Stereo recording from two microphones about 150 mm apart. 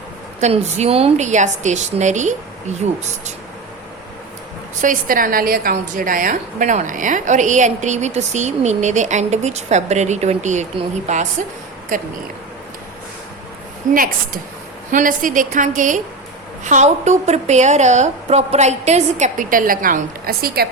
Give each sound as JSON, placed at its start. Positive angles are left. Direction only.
{"t": 0.3, "sound": "a woman's voice", "side_deg": -50}
{"t": 4.8, "sound": "a woman's voice", "side_deg": -65}
{"t": 5.7, "sound": "a woman's voice", "side_deg": -65}
{"t": 13.8, "sound": "a woman's voice", "side_deg": -60}